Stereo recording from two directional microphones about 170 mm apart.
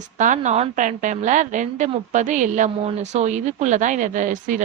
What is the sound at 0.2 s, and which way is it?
A woman's voice, 45° right (ahead or behind).